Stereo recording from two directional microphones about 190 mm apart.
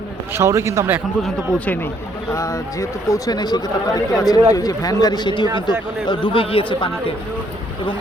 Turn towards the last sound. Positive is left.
turn(degrees=30)  # may be behind; listen again after turning